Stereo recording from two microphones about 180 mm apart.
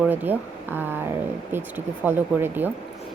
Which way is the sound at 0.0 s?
10° right (ahead or behind).